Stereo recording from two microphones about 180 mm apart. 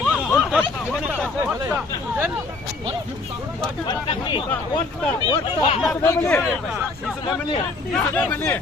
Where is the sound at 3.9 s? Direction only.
25° left (ahead or behind).